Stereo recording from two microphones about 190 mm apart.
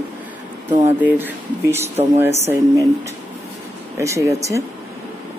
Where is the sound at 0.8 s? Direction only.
10° right (ahead or behind).